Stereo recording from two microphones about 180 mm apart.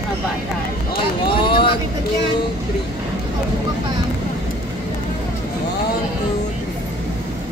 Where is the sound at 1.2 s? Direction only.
25° left (ahead or behind).